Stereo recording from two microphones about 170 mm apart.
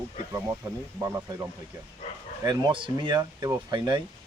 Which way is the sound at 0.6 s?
20° right (ahead or behind).